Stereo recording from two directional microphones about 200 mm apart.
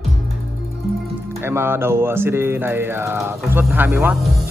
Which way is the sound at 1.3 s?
10° right (ahead or behind).